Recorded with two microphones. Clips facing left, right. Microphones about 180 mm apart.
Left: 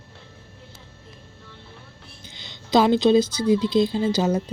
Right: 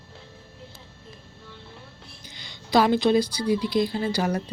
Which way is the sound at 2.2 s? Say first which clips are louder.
Left 1 dB; 25° left (ahead or behind).